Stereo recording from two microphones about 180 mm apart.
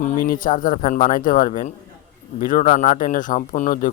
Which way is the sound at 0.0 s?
50° left (ahead or behind).